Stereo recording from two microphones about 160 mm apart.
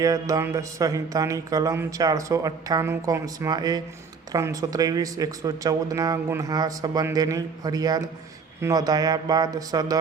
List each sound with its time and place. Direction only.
0.0 s music: 20° right (ahead or behind)